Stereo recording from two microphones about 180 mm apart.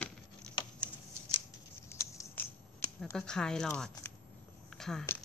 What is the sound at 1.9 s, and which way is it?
Scissors, 15° left (ahead or behind).